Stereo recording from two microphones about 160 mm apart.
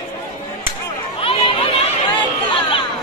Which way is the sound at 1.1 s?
35° left (ahead or behind).